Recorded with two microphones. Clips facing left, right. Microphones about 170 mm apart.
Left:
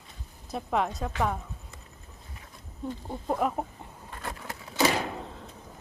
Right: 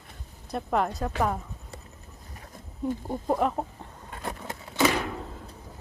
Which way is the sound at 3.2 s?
5° right (ahead or behind).